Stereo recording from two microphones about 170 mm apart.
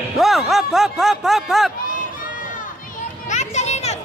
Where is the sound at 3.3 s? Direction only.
45° left (ahead or behind).